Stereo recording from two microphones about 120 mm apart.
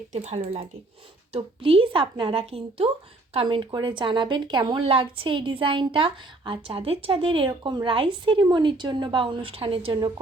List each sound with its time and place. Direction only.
0.1 s a woman's voice: 70° right (ahead or behind); by 4.8 s 40° right (ahead or behind)
4.8 s a woman's voice: 50° right (ahead or behind)